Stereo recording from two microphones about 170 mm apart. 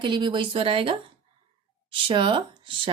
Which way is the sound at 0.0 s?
25° right (ahead or behind).